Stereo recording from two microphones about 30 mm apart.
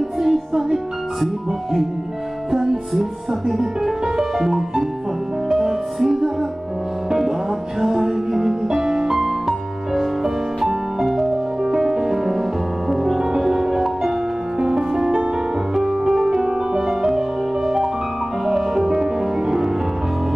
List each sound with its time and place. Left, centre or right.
0.2 s music: centre
2.5 s speech: centre
4.2 s music: centre
7.8 s music: centre
11.7 s music: centre
13.4 s music: centre
16.3 s music: right
18.5 s music: centre